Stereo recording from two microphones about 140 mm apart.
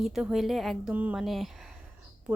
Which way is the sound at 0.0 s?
5° right (ahead or behind).